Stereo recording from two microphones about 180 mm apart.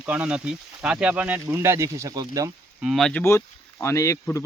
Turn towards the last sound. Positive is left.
turn(degrees=15)  # may be behind; listen again after turning